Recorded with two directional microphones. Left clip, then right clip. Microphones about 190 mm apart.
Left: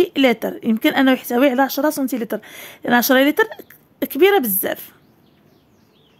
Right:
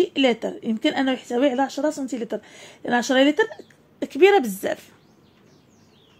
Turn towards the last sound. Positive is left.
turn(degrees=25)  # may be behind; listen again after turning